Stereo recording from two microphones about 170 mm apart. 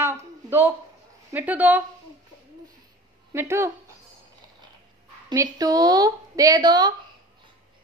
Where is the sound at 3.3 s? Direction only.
15° right (ahead or behind).